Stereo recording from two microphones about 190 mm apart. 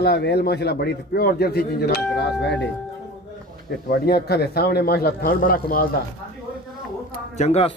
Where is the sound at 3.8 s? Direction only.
55° left (ahead or behind).